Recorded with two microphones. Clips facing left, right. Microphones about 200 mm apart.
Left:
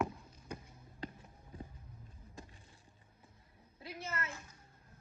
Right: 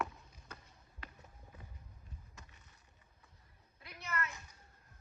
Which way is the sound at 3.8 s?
25° left (ahead or behind).